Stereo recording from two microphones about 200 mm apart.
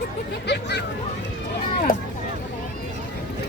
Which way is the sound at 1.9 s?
45° left (ahead or behind).